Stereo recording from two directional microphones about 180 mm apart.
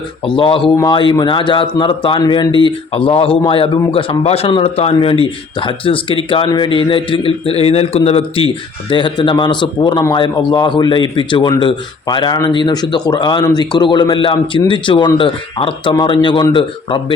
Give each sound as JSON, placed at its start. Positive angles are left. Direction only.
{"t": 0.3, "sound": "speech", "side_deg": 30}